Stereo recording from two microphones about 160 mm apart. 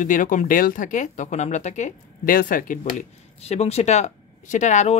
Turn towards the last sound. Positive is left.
turn(degrees=45)  # may be behind; listen again after turning